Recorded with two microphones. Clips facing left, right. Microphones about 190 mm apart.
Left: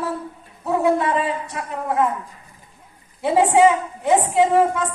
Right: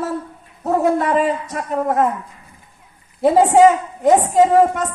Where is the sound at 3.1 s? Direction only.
40° right (ahead or behind).